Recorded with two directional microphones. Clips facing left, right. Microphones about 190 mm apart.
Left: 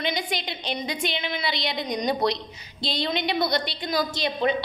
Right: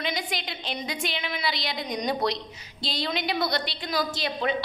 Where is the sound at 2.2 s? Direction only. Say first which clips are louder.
Left 3 dB; 25° left (ahead or behind).